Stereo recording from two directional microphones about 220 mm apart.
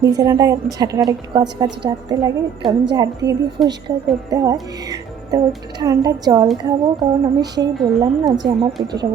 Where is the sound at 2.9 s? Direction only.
15° right (ahead or behind).